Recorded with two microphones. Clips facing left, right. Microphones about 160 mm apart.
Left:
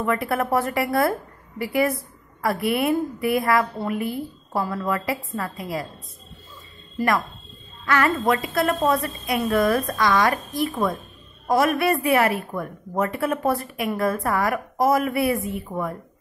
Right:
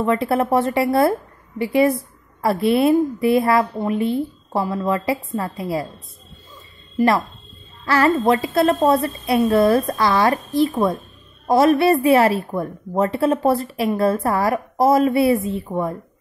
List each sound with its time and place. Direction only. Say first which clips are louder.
0.0 s a woman's voice: right 5 dB; 25° right (ahead or behind)
7.8 s a woman's voice: right 4 dB; 30° right (ahead or behind)